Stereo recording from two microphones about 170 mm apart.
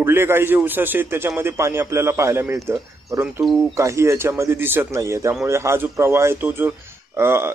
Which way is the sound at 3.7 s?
15° right (ahead or behind).